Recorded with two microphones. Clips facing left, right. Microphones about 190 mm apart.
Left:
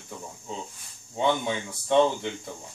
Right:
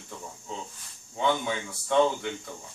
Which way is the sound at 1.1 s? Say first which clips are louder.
Left 2 dB; 25° left (ahead or behind).